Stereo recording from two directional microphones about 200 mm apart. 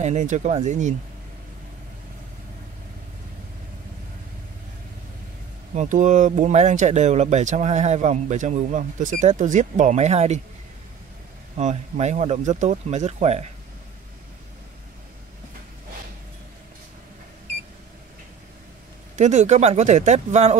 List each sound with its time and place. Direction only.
0.0 s speech: 35° right (ahead or behind)
5.8 s speech: 40° right (ahead or behind)
11.5 s speech: 35° right (ahead or behind)
19.1 s speech: 35° right (ahead or behind)